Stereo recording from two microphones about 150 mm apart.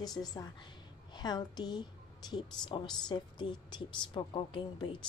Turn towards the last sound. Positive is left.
turn(degrees=35)  # may be behind; listen again after turning